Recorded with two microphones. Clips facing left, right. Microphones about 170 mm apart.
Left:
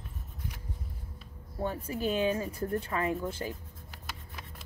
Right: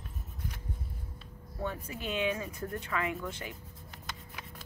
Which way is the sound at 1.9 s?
35° left (ahead or behind).